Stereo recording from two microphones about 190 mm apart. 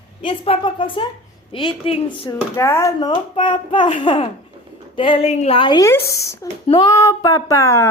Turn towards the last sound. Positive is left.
turn(degrees=15)  # may be behind; listen again after turning